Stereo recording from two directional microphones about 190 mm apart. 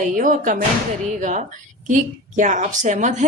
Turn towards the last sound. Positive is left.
turn(degrees=-40)  # may be behind; listen again after turning